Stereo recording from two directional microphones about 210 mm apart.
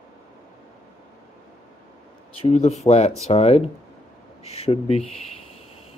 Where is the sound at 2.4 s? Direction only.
30° left (ahead or behind).